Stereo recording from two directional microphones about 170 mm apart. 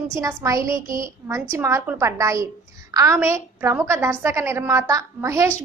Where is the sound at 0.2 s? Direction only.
20° right (ahead or behind).